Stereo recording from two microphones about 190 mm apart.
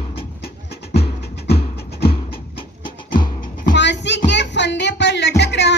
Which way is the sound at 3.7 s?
65° left (ahead or behind).